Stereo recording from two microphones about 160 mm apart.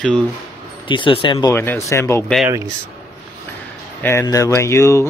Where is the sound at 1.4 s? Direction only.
15° left (ahead or behind).